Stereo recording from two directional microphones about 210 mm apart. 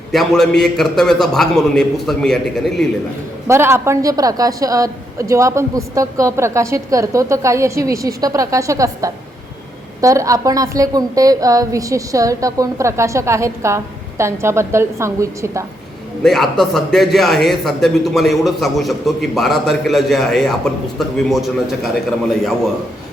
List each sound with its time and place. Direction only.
0.1 s a man's voice: centre (ahead or behind)
3.4 s a woman's voice: 10° right (ahead or behind)
16.2 s a man's voice: centre (ahead or behind)